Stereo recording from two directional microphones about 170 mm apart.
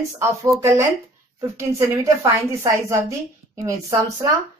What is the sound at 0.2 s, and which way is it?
A woman's voice, 15° right (ahead or behind).